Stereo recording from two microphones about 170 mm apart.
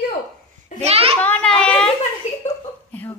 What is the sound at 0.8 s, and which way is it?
Speech, 35° right (ahead or behind).